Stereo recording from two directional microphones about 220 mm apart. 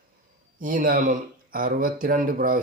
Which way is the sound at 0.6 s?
40° right (ahead or behind).